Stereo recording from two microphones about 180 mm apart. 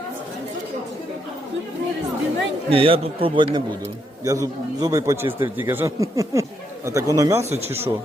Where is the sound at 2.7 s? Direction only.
30° right (ahead or behind).